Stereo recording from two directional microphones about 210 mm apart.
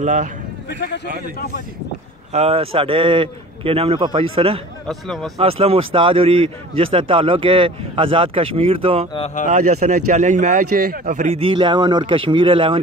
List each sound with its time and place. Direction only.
0.0 s a man's voice: 35° right (ahead or behind)
0.7 s speech: 55° left (ahead or behind)
2.3 s speech: 30° right (ahead or behind)
4.8 s speech: centre (ahead or behind)
5.4 s speech: 30° right (ahead or behind)
9.1 s speech: 30° left (ahead or behind)
9.5 s a man's voice: 35° right (ahead or behind)